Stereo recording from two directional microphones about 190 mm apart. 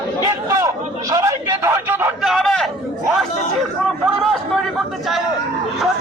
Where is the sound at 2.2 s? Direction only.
Centre (ahead or behind).